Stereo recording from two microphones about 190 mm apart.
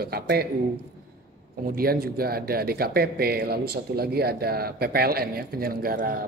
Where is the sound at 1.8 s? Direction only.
55° right (ahead or behind).